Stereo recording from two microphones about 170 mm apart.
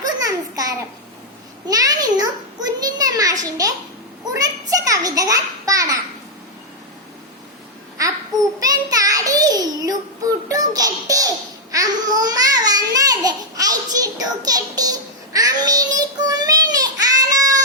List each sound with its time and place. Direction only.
0.0 s a sound: 20° right (ahead or behind)
8.0 s babbling: 20° right (ahead or behind)
8.6 s child singing: 20° right (ahead or behind)
10.7 s a child's voice: 20° right (ahead or behind)
15.3 s child singing: 20° right (ahead or behind)